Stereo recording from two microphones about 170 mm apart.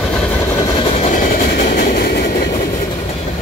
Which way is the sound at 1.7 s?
60° left (ahead or behind).